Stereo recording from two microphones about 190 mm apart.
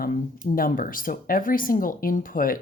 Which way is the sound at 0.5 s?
45° left (ahead or behind).